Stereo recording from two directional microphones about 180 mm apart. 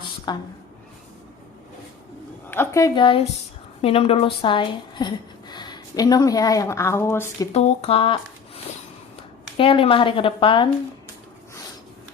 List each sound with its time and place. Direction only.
0.3 s speech: 25° left (ahead or behind)
2.5 s speech: 15° left (ahead or behind)
7.5 s speech: 35° left (ahead or behind)